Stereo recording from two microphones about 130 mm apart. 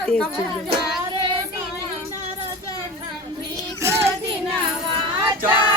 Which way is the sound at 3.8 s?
20° right (ahead or behind).